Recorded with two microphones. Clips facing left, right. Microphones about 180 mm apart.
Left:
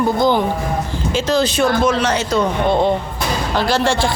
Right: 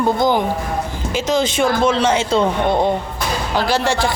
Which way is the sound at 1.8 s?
25° right (ahead or behind).